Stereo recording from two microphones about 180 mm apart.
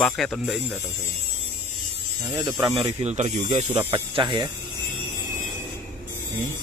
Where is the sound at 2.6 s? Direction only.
30° right (ahead or behind).